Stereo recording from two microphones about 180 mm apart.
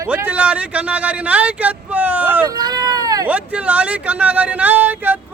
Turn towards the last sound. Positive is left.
turn(degrees=-10)  # may be behind; listen again after turning